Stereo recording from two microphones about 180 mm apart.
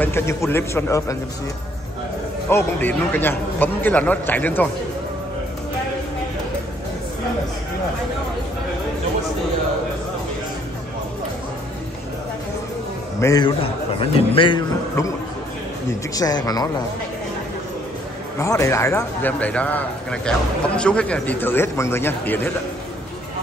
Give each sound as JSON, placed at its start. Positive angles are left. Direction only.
{"t": 0.0, "sound": "a man's voice", "side_deg": 15}
{"t": 2.5, "sound": "a man's voice", "side_deg": 10}
{"t": 13.2, "sound": "a man's voice", "side_deg": 20}
{"t": 13.6, "sound": "a man's voice", "side_deg": 30}
{"t": 16.2, "sound": "a man's voice", "side_deg": 20}
{"t": 18.4, "sound": "a man's voice", "side_deg": 15}